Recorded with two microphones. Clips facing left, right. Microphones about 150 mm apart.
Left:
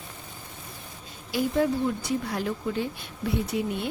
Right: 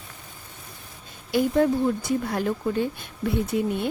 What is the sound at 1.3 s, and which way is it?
Speech, 50° right (ahead or behind).